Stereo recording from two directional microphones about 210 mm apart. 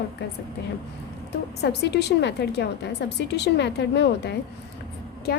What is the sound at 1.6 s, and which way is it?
A woman's voice, 50° left (ahead or behind).